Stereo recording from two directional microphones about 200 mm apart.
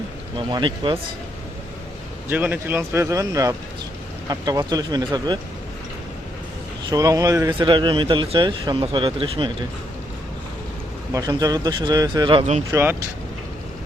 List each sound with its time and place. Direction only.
0.3 s speech: 25° right (ahead or behind)
2.3 s speech: 10° right (ahead or behind)
6.9 s speech: 15° right (ahead or behind)
11.1 s speech: 20° right (ahead or behind)
12.7 s speech: 10° right (ahead or behind)